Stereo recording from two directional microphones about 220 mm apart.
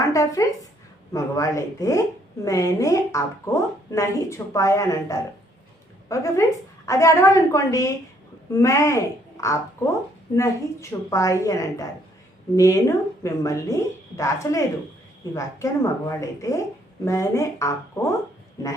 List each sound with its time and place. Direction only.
0.1 s speech: 15° left (ahead or behind)